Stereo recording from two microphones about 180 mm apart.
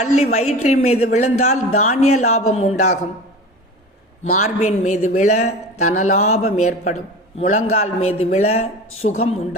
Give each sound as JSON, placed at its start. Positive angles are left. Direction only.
{"t": 0.0, "sound": "a man's voice", "side_deg": 40}
{"t": 4.4, "sound": "a man's voice", "side_deg": 40}